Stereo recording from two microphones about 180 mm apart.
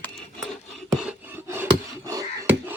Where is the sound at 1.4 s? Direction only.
15° right (ahead or behind).